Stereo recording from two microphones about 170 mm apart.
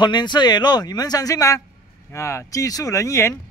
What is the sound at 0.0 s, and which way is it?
A man's voice, 25° left (ahead or behind).